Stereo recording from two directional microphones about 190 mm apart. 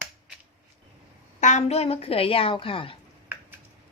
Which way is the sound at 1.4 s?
40° left (ahead or behind).